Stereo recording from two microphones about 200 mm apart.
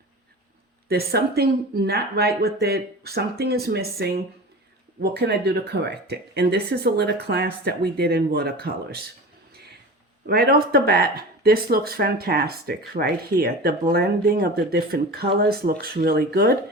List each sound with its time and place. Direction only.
0.9 s speech: 50° right (ahead or behind)
10.2 s speech: 50° right (ahead or behind)